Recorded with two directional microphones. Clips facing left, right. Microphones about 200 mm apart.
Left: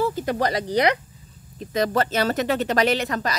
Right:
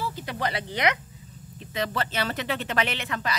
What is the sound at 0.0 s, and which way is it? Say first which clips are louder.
Speech: left 8 dB; 45° left (ahead or behind).